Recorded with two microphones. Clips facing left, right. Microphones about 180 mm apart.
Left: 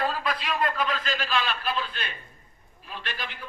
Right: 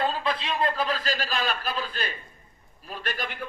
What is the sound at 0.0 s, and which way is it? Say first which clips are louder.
A man's voice: right 1 dB; 25° right (ahead or behind).